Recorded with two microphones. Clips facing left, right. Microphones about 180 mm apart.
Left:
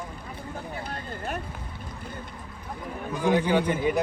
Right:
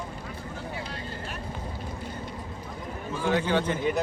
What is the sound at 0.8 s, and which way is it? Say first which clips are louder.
Speech: left 1 dB; 50° left (ahead or behind).